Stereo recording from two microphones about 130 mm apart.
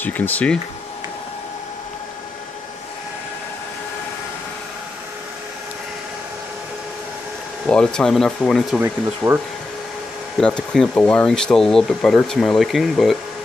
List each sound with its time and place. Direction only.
0.0 s speech: 15° left (ahead or behind)
7.6 s speech: 5° left (ahead or behind)
8.7 s speech: 20° right (ahead or behind)
10.3 s speech: 5° left (ahead or behind)